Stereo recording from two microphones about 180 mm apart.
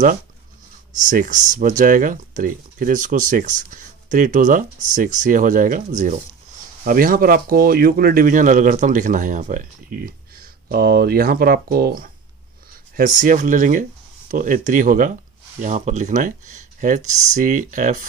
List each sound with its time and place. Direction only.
0.9 s speech: 45° right (ahead or behind)
12.9 s speech: 45° right (ahead or behind)